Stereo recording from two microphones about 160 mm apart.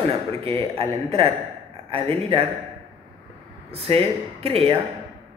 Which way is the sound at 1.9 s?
35° right (ahead or behind).